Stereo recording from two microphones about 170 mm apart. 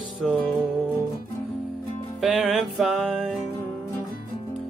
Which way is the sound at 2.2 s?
5° right (ahead or behind).